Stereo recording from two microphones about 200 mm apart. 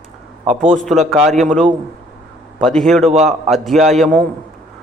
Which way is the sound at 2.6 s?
5° left (ahead or behind).